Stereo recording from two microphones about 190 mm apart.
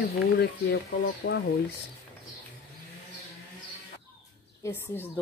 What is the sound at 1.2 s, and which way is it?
Speech, 70° left (ahead or behind).